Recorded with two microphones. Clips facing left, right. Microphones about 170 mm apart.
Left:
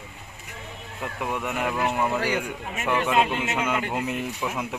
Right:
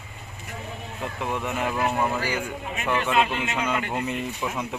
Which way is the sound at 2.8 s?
10° left (ahead or behind).